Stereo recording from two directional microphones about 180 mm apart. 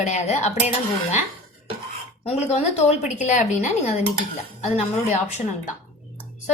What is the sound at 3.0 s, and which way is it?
A woman's voice, 45° left (ahead or behind).